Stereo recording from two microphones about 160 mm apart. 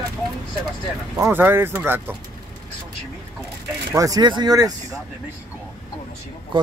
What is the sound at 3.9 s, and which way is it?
Speech, 20° right (ahead or behind).